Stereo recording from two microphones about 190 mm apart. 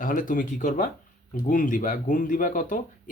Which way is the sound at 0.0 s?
45° left (ahead or behind).